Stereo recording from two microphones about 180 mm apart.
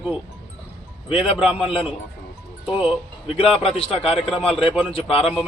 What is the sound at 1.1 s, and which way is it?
Speech, 30° left (ahead or behind).